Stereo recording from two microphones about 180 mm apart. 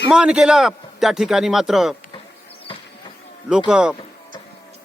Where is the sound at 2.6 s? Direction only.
30° left (ahead or behind).